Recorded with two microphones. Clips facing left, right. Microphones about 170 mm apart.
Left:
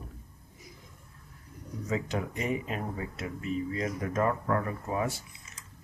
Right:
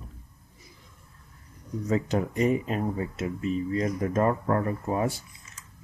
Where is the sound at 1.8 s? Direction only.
40° right (ahead or behind).